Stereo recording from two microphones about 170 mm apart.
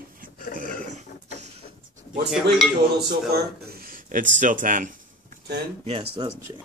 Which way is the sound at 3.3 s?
65° right (ahead or behind).